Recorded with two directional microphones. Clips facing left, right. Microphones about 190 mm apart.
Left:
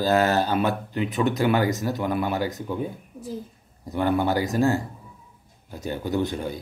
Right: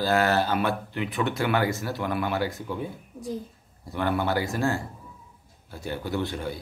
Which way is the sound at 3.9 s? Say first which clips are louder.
Left 4 dB; 15° left (ahead or behind).